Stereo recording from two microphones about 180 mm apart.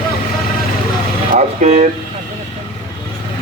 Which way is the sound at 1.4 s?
40° right (ahead or behind).